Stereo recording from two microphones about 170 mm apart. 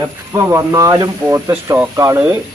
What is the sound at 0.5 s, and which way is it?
Speech, 20° right (ahead or behind).